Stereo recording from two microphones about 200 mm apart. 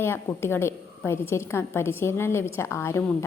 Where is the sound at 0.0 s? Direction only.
10° left (ahead or behind).